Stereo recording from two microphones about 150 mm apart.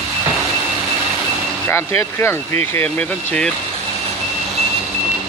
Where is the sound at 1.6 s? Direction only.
15° left (ahead or behind).